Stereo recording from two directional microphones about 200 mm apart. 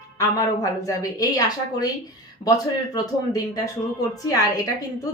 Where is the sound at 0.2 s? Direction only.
15° left (ahead or behind).